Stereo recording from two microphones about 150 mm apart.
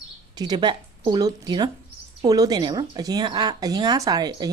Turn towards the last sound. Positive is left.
turn(degrees=-25)  # may be behind; listen again after turning